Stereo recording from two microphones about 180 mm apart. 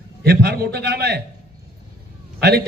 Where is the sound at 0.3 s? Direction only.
60° right (ahead or behind).